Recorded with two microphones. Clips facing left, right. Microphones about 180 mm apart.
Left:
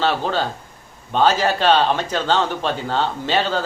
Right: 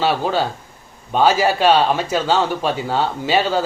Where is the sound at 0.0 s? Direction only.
10° right (ahead or behind).